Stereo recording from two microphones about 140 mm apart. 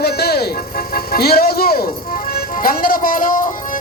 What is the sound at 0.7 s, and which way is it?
Speech, 90° left.